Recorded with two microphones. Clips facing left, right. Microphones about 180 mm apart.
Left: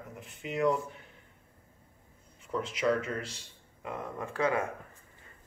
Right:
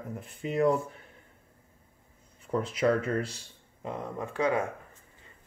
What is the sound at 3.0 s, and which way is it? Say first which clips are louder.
Speech: right 5 dB; 35° right (ahead or behind).